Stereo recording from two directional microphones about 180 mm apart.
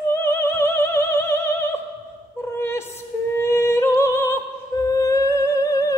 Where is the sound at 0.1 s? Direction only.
15° left (ahead or behind).